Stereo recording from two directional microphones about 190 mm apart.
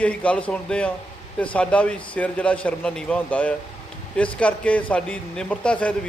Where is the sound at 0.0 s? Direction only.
5° left (ahead or behind).